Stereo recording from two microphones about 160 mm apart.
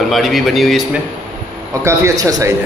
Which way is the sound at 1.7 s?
20° right (ahead or behind).